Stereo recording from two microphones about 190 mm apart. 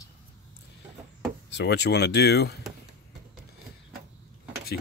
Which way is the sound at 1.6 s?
65° left (ahead or behind).